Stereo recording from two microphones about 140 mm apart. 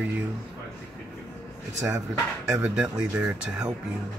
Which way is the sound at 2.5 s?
5° right (ahead or behind).